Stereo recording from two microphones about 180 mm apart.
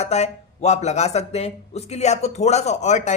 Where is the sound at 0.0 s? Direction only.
35° left (ahead or behind).